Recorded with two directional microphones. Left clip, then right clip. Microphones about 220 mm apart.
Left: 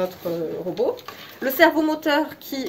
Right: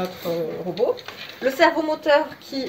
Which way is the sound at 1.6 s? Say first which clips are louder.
Left 2 dB; 40° left (ahead or behind).